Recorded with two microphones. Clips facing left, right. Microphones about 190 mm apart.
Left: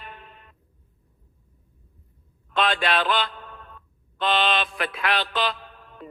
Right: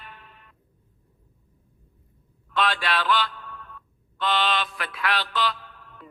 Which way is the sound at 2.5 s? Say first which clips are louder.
Left 2 dB; 20° left (ahead or behind).